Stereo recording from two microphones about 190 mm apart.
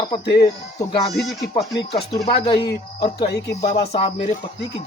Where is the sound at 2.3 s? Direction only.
30° left (ahead or behind).